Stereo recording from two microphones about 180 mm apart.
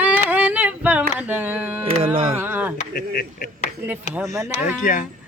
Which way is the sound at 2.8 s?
50° left (ahead or behind).